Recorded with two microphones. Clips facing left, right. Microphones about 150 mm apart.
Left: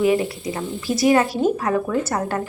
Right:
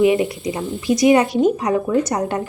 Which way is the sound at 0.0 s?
15° right (ahead or behind).